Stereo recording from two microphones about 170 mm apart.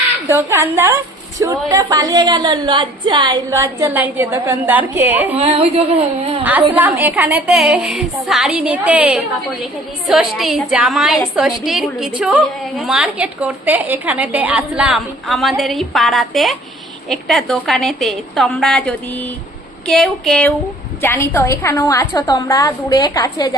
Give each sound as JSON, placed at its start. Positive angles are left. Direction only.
{"t": 0.3, "sound": "a woman's voice", "side_deg": -15}
{"t": 3.5, "sound": "a woman's voice", "side_deg": -15}
{"t": 5.4, "sound": "a sound", "side_deg": -35}
{"t": 6.7, "sound": "a woman's voice", "side_deg": -10}
{"t": 21.0, "sound": "a woman's voice", "side_deg": 15}